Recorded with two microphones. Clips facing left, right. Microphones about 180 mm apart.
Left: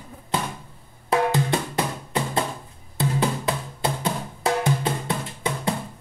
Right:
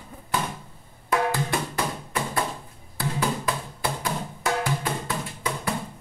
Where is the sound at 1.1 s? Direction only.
25° left (ahead or behind).